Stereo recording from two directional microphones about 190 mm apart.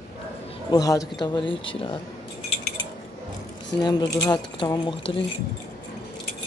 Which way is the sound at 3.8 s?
20° left (ahead or behind).